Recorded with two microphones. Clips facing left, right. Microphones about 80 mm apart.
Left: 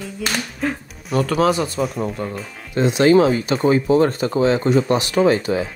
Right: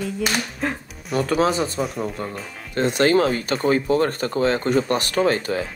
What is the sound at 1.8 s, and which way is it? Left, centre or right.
Speech, centre.